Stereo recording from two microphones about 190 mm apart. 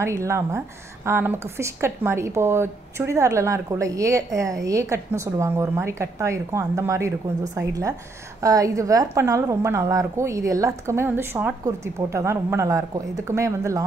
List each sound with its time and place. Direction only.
0.0 s a woman's voice: 15° right (ahead or behind)